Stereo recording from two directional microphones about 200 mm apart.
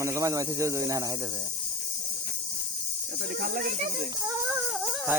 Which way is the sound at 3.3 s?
45° right (ahead or behind).